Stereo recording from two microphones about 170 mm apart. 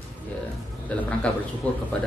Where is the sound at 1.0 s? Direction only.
5° left (ahead or behind).